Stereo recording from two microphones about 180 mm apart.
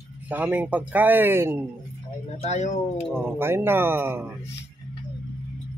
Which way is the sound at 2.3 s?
35° left (ahead or behind).